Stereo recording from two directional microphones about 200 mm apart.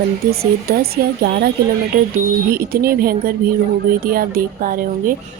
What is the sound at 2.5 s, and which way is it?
Speech, 45° right (ahead or behind).